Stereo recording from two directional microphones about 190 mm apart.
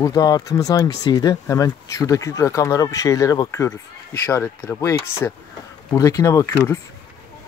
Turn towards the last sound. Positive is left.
turn(degrees=15)  # may be behind; listen again after turning